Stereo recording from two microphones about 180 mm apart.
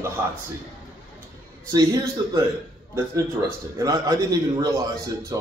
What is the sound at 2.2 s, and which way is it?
Speech, 20° right (ahead or behind).